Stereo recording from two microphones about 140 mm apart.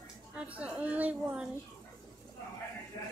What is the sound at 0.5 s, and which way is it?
Speech, 10° right (ahead or behind).